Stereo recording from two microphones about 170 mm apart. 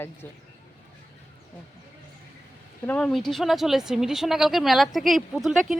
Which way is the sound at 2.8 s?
5° left (ahead or behind).